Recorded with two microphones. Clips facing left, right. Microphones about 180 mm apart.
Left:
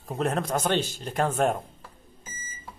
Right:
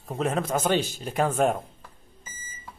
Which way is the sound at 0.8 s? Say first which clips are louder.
Right 1 dB; 15° right (ahead or behind).